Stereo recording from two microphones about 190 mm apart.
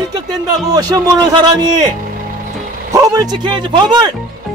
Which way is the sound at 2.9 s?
20° right (ahead or behind).